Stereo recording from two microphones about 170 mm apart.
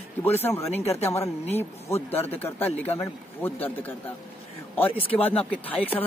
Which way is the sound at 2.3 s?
10° left (ahead or behind).